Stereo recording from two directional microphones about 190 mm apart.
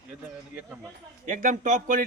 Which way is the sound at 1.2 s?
40° right (ahead or behind).